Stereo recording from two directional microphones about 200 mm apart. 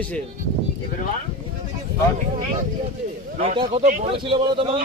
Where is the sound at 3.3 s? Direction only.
30° right (ahead or behind).